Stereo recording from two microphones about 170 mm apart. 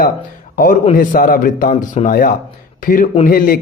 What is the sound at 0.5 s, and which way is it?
A man's voice, 60° left (ahead or behind).